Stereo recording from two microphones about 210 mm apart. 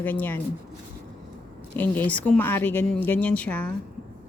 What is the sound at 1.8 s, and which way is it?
Speech, 10° left (ahead or behind).